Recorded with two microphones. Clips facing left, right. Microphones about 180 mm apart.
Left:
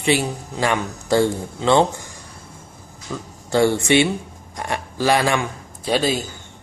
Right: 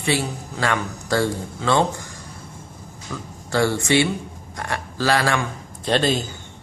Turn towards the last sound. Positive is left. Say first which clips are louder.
# even
turn(degrees=5)  # may be behind; listen again after turning